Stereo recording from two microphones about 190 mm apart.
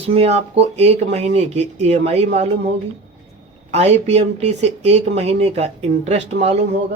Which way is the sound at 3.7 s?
35° right (ahead or behind).